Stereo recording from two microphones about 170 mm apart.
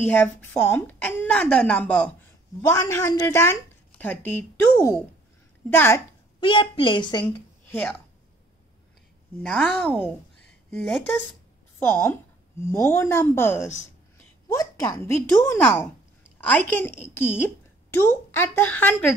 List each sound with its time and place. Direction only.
0.0 s a woman's voice: 10° left (ahead or behind)
2.7 s a woman's voice: 20° left (ahead or behind)
5.7 s a woman's voice: 15° left (ahead or behind)
6.4 s a woman's voice: 30° left (ahead or behind)
9.4 s a woman's voice: 5° left (ahead or behind)